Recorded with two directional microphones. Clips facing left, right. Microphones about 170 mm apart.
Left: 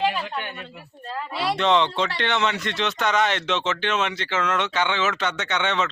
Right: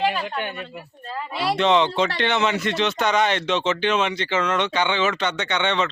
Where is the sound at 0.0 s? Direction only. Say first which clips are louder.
Right 1 dB; 15° right (ahead or behind).